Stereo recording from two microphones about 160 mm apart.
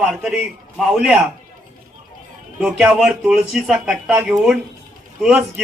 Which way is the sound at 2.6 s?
5° right (ahead or behind).